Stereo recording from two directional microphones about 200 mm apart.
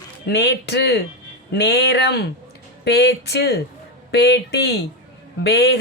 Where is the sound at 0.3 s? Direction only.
60° left (ahead or behind).